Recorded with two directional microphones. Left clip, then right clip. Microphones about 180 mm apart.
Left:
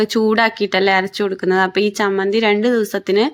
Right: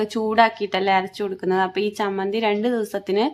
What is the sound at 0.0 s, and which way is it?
Speech, 20° left (ahead or behind).